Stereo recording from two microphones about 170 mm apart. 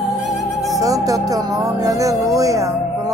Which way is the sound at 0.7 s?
20° right (ahead or behind).